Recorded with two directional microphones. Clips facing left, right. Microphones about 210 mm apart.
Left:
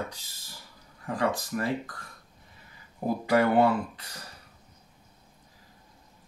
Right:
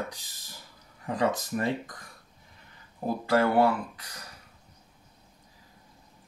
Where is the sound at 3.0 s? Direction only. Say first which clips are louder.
Left 1 dB; 15° left (ahead or behind).